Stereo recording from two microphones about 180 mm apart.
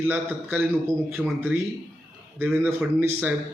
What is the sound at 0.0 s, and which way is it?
A man's voice, 10° right (ahead or behind).